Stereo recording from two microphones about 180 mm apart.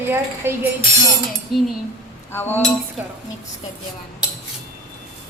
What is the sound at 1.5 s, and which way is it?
Speech, centre (ahead or behind).